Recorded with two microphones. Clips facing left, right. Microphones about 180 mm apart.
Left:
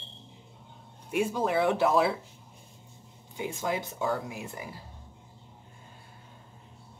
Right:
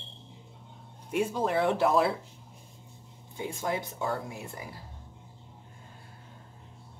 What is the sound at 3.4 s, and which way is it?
Speech, 20° left (ahead or behind).